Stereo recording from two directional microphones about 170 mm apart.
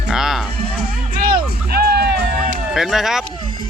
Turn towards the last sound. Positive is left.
turn(degrees=0)  # may be behind; listen again after turning